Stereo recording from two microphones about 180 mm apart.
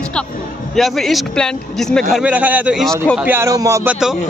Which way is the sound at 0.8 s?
Centre (ahead or behind).